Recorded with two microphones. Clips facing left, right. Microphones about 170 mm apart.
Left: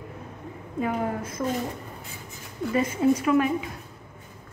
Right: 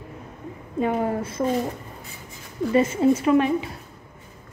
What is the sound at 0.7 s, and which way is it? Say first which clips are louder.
Speech: right 4 dB; 30° right (ahead or behind).